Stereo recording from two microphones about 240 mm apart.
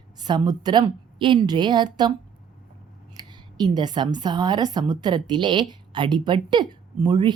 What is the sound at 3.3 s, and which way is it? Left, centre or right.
A woman's voice, centre.